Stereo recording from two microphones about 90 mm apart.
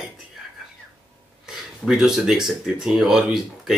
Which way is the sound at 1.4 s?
5° right (ahead or behind).